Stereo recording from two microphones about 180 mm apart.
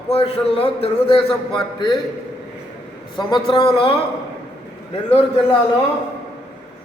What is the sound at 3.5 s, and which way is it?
Speech, 30° left (ahead or behind).